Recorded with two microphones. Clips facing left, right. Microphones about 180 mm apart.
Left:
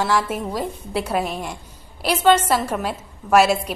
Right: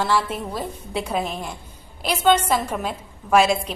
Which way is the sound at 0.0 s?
10° left (ahead or behind).